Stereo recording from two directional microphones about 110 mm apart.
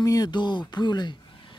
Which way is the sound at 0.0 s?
35° left (ahead or behind).